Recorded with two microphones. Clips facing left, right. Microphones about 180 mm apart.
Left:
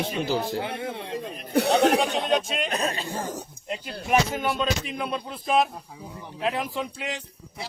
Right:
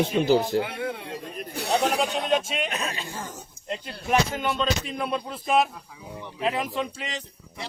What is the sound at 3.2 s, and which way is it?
Speech, 65° left (ahead or behind).